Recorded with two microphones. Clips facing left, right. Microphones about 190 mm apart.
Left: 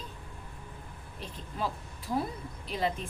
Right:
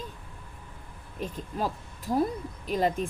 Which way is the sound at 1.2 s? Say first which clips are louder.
Right 9 dB; 45° right (ahead or behind).